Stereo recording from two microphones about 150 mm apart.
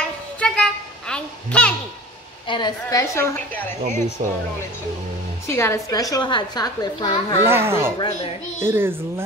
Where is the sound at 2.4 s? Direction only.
30° left (ahead or behind); by 3.7 s 15° left (ahead or behind).